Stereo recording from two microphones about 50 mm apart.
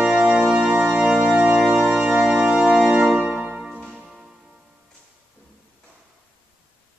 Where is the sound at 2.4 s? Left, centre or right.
Centre.